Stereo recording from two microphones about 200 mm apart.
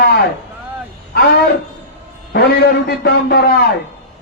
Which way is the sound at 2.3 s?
55° left (ahead or behind).